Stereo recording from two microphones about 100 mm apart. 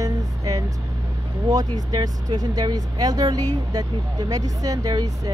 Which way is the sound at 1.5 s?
40° right (ahead or behind).